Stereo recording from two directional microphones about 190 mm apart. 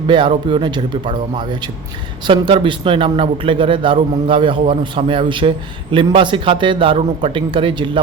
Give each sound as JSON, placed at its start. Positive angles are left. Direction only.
{"t": 0.1, "sound": "speech", "side_deg": -25}